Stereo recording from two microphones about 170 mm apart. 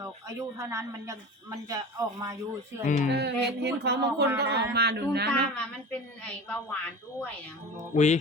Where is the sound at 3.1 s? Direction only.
80° right.